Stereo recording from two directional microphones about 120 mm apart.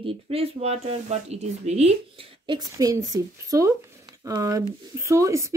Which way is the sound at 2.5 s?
35° right (ahead or behind).